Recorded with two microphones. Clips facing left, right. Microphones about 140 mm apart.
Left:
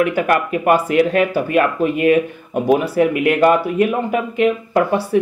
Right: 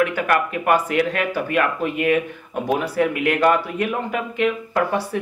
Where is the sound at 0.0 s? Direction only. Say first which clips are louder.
Left 3 dB; 15° left (ahead or behind).